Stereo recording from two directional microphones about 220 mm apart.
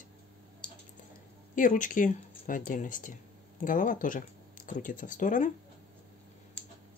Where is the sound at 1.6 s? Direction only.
35° left (ahead or behind).